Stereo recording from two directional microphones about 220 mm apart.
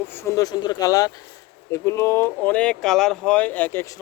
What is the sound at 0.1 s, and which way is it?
Speech, 10° left (ahead or behind).